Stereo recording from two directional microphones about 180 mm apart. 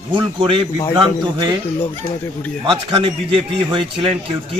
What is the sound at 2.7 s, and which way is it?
A man's voice, 30° right (ahead or behind).